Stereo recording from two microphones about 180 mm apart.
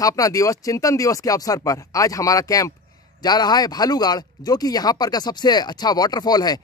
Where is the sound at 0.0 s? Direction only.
20° left (ahead or behind).